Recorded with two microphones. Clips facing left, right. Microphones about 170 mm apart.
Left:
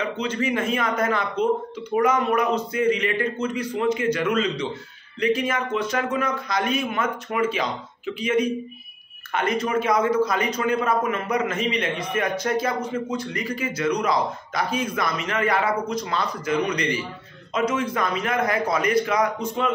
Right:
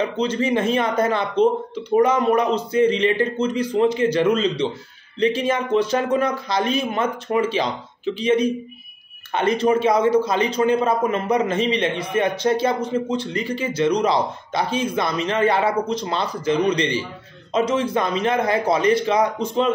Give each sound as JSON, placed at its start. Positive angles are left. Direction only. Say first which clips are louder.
{"t": 0.0, "sound": "a man's voice", "louder": "right 4 dB", "side_deg": -30}